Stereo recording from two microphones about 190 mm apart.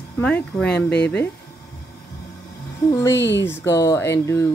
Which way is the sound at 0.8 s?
60° left (ahead or behind).